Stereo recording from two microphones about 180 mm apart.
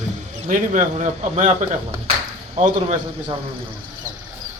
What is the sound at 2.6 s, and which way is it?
Speech, 40° right (ahead or behind).